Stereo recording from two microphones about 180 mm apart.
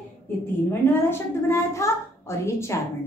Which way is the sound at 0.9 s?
15° left (ahead or behind).